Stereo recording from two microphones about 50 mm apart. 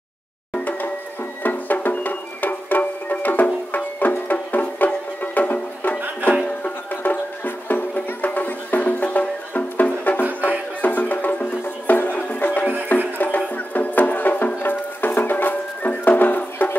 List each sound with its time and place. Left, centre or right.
1.4 s music: left